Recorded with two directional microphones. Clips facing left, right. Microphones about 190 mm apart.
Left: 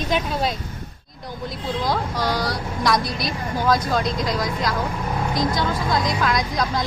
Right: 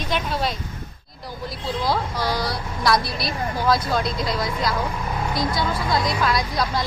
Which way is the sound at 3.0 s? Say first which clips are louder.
Left 2 dB; 45° left (ahead or behind).